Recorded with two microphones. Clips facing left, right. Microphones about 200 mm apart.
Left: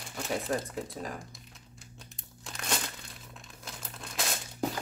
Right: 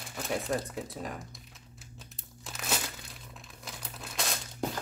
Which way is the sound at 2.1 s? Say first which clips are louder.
Even; 5° right (ahead or behind).